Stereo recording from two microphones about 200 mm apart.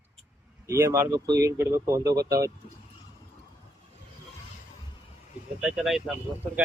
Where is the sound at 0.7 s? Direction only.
15° right (ahead or behind).